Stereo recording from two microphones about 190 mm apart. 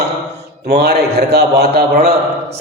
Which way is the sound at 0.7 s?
55° right (ahead or behind).